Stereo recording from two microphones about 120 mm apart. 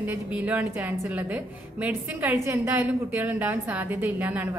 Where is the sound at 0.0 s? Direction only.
15° right (ahead or behind).